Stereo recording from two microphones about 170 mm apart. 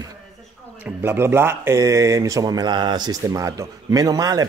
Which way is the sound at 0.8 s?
15° right (ahead or behind).